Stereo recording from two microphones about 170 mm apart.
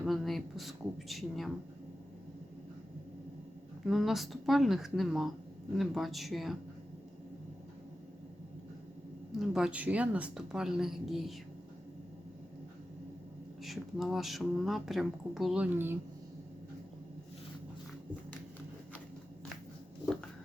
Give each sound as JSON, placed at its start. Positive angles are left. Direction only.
{"t": 0.0, "sound": "speech", "side_deg": 0}
{"t": 3.8, "sound": "speech", "side_deg": 0}
{"t": 9.4, "sound": "speech", "side_deg": 0}
{"t": 13.7, "sound": "speech", "side_deg": 0}